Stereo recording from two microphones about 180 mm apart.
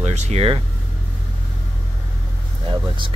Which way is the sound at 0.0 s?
40° right (ahead or behind).